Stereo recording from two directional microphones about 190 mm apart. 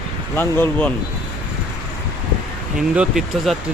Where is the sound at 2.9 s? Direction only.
Centre (ahead or behind).